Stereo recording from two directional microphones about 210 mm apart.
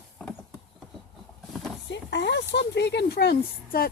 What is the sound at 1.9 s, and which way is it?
Speech, 55° left (ahead or behind).